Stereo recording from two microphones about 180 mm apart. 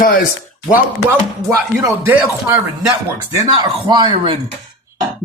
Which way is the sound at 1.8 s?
15° right (ahead or behind).